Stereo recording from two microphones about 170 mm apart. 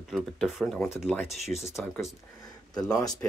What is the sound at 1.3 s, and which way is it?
Speech, 40° left (ahead or behind).